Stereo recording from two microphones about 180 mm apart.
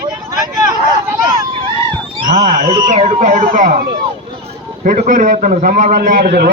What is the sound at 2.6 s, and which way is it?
Speech, 45° right (ahead or behind).